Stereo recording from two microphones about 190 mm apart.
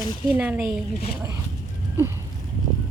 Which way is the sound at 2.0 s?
15° right (ahead or behind).